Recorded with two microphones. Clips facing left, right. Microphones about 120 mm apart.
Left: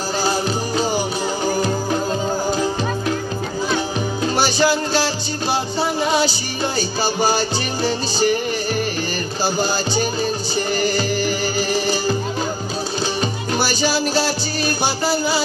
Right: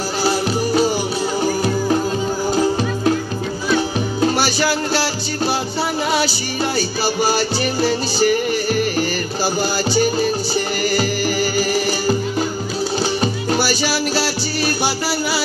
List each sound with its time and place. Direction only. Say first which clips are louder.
0.2 s music: right 4 dB; 20° left (ahead or behind)
4.4 s music: left 1 dB; 20° left (ahead or behind)
6.1 s music: even; 20° left (ahead or behind)
13.2 s music: right 2 dB; 20° left (ahead or behind)